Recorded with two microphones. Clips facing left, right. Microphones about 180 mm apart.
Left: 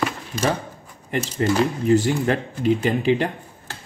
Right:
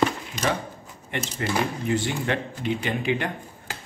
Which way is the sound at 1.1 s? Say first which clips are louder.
Left 6 dB; 40° left (ahead or behind).